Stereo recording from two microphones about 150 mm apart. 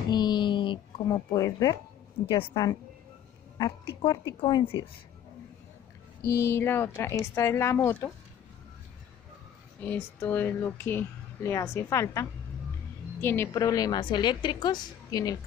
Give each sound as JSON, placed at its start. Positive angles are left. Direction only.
{"t": 0.1, "sound": "a sound", "side_deg": 30}
{"t": 1.0, "sound": "a woman's voice", "side_deg": 25}
{"t": 6.2, "sound": "speech", "side_deg": 20}
{"t": 9.8, "sound": "a woman's voice", "side_deg": 10}